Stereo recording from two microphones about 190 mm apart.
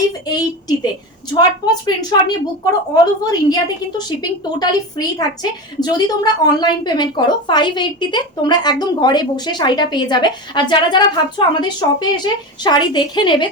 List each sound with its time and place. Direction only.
0.3 s a woman's voice: 20° left (ahead or behind)